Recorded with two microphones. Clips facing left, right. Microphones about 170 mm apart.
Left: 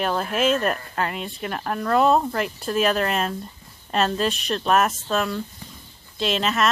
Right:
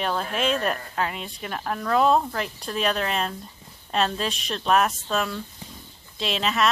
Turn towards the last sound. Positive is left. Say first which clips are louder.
# left 2 dB
turn(degrees=0)  # may be behind; listen again after turning